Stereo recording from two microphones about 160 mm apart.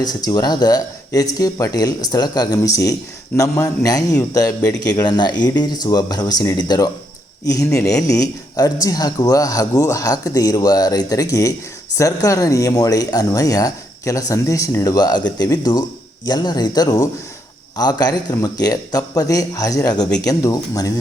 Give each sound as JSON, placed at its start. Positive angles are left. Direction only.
{"t": 0.0, "sound": "speech", "side_deg": 25}